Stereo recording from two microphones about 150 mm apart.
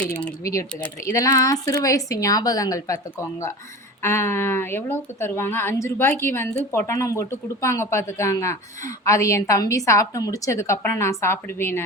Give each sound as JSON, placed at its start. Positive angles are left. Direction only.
{"t": 0.8, "sound": "speech", "side_deg": 20}